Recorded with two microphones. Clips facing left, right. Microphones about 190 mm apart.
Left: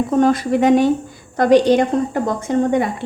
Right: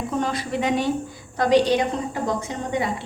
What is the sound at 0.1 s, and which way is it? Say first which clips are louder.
A woman's voice: left 10 dB; 50° left (ahead or behind).